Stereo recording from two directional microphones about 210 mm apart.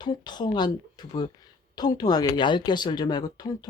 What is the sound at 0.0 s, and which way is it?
Speech, 20° left (ahead or behind).